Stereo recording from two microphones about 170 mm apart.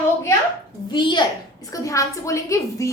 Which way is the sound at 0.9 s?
25° left (ahead or behind).